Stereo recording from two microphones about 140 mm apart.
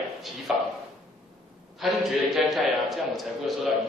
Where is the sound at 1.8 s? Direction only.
Centre (ahead or behind).